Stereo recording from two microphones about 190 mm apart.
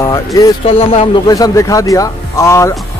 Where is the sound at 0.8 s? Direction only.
30° left (ahead or behind).